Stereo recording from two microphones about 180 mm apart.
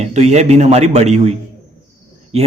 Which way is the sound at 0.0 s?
35° right (ahead or behind).